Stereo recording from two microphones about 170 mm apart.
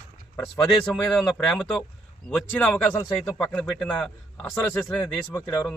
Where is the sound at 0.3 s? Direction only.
20° left (ahead or behind).